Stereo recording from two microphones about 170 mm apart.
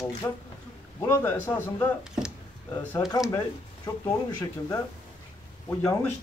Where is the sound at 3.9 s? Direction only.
20° left (ahead or behind).